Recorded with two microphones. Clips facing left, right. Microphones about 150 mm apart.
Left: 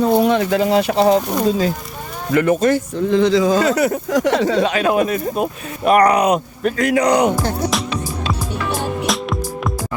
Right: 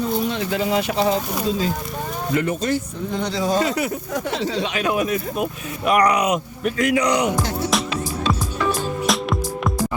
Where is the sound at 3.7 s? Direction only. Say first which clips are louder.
Left 7 dB; 70° left (ahead or behind); by 6.9 s 35° left (ahead or behind).